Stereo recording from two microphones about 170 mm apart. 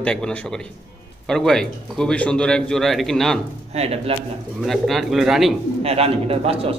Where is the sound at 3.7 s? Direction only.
35° right (ahead or behind).